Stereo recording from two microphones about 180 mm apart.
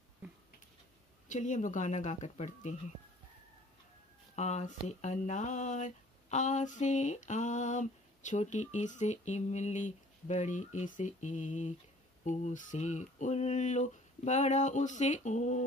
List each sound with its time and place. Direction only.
1.3 s speech: 45° left (ahead or behind)
4.4 s speech: 40° left (ahead or behind)